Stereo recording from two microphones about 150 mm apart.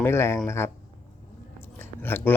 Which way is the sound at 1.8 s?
15° left (ahead or behind).